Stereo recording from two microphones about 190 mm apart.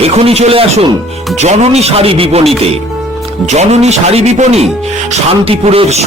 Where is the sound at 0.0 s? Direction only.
30° right (ahead or behind).